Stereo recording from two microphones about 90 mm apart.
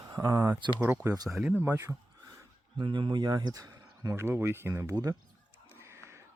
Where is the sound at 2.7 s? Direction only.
70° right (ahead or behind); by 5.1 s 35° right (ahead or behind).